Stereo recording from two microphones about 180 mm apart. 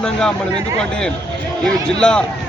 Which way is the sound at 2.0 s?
5° left (ahead or behind).